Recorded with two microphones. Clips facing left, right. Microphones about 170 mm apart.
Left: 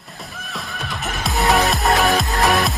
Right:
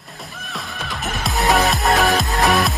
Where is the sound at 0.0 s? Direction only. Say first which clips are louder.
Even; centre (ahead or behind).